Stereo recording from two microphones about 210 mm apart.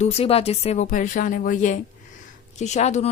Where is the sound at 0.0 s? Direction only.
30° left (ahead or behind).